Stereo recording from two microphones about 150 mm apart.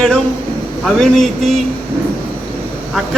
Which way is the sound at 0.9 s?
5° left (ahead or behind).